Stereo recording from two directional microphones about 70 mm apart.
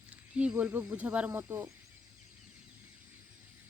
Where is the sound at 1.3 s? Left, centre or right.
Right.